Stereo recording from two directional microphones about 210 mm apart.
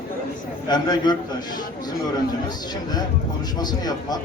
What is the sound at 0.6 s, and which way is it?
Speech, 20° left (ahead or behind).